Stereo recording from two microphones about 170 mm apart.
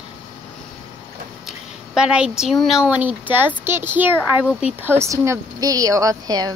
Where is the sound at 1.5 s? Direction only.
5° right (ahead or behind).